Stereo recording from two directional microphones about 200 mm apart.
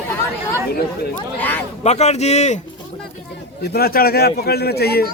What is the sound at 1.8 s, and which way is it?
Speech, 35° left (ahead or behind).